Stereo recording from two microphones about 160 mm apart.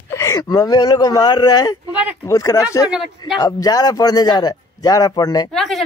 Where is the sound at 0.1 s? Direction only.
20° left (ahead or behind).